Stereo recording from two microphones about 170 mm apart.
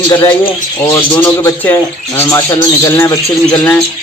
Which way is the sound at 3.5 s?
5° left (ahead or behind).